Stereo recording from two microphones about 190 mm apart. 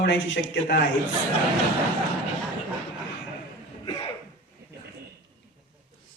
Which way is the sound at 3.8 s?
30° left (ahead or behind).